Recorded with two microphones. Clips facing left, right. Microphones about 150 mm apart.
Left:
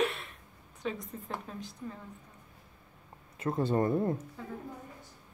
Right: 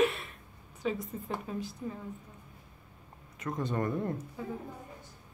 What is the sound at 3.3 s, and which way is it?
Speech, 30° left (ahead or behind).